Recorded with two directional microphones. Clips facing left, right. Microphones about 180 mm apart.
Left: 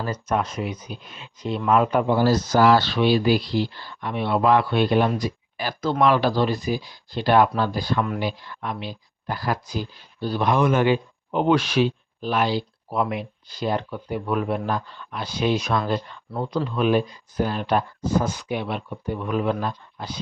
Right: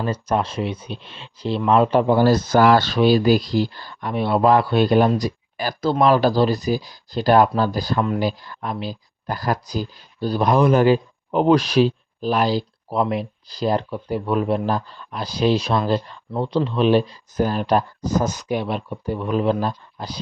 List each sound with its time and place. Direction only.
0.0 s speech: 30° right (ahead or behind)
2.0 s speech: 55° right (ahead or behind); by 20.1 s 35° right (ahead or behind)